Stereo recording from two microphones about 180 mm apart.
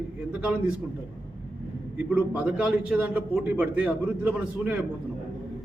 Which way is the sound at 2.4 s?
5° right (ahead or behind).